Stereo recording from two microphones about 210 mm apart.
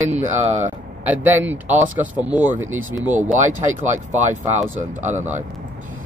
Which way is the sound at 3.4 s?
35° right (ahead or behind).